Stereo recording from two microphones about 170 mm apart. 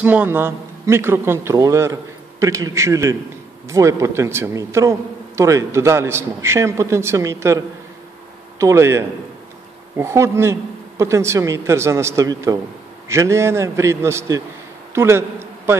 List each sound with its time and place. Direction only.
0.0 s a man's voice: 10° right (ahead or behind)